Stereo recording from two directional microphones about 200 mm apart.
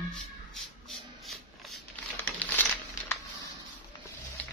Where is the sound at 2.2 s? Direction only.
10° left (ahead or behind).